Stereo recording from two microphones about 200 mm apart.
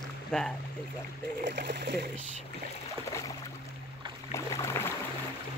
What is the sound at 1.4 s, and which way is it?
Speech, 60° right (ahead or behind).